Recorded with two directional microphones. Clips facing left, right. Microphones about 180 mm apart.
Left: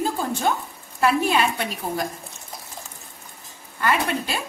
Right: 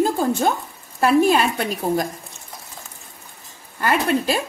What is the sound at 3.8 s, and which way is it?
Speech, 45° right (ahead or behind).